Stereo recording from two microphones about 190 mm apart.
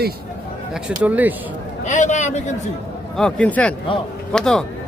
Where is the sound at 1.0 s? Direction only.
10° right (ahead or behind).